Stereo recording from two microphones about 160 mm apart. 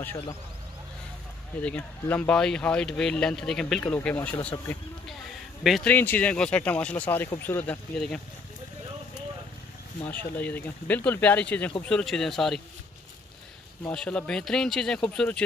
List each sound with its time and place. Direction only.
0.0 s speech: 15° left (ahead or behind)
1.6 s speech: 10° left (ahead or behind)
5.6 s speech: centre (ahead or behind)
5.9 s speech: 10° left (ahead or behind)
10.0 s speech: 10° left (ahead or behind)
13.8 s speech: 5° left (ahead or behind)